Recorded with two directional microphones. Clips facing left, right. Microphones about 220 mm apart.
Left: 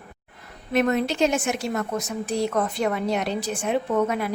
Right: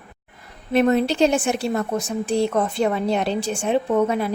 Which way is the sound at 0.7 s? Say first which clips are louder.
Right 4 dB; 30° right (ahead or behind).